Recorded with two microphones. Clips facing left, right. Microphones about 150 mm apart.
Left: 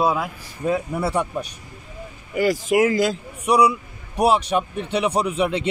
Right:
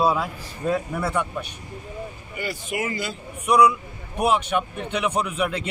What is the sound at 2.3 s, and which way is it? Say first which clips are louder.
Speech: left 12 dB; 90° left.